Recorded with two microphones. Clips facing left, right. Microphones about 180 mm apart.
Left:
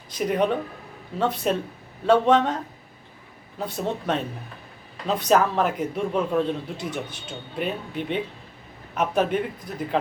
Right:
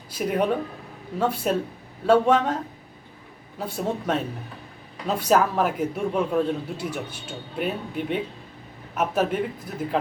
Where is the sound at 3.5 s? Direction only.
10° right (ahead or behind).